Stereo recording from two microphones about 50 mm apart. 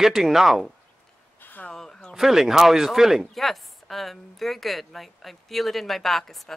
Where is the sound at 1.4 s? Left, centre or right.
Left.